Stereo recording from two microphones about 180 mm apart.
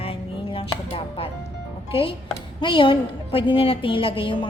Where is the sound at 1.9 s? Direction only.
30° left (ahead or behind).